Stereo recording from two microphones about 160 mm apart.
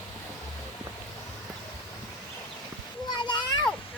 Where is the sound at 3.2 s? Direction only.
30° left (ahead or behind).